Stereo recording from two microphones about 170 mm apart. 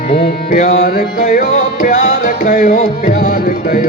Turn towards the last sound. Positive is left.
turn(degrees=55)  # may be behind; listen again after turning